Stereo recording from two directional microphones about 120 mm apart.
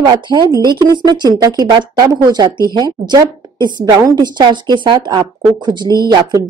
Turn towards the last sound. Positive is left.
turn(degrees=-35)  # may be behind; listen again after turning